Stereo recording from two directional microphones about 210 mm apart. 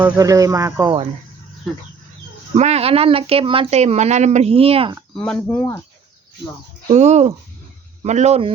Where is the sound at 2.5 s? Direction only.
30° right (ahead or behind).